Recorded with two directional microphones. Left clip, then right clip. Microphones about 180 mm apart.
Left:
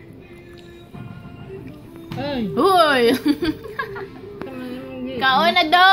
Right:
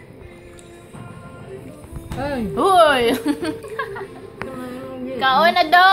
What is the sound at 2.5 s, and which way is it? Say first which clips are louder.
Speech: right 2 dB; 20° left (ahead or behind).